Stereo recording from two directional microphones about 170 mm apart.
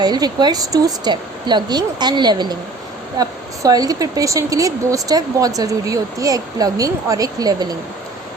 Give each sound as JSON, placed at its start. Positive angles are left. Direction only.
{"t": 0.0, "sound": "a woman's voice", "side_deg": -25}